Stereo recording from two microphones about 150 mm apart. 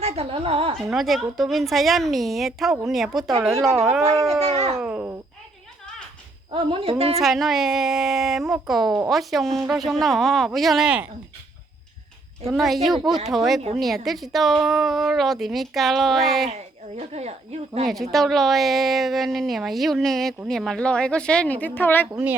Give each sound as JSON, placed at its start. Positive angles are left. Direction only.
{"t": 0.0, "sound": "a woman's voice", "side_deg": -40}
{"t": 0.9, "sound": "a woman's voice", "side_deg": 0}
{"t": 3.7, "sound": "speech", "side_deg": -20}
{"t": 4.3, "sound": "a woman's voice", "side_deg": -40}
{"t": 4.8, "sound": "a child's voice", "side_deg": -10}
{"t": 6.5, "sound": "speech", "side_deg": -35}
{"t": 7.2, "sound": "a woman's voice", "side_deg": 0}
{"t": 12.5, "sound": "a woman's voice", "side_deg": 0}
{"t": 17.0, "sound": "a woman's voice", "side_deg": -45}
{"t": 17.8, "sound": "a woman's voice", "side_deg": 0}
{"t": 22.1, "sound": "a child's voice", "side_deg": -15}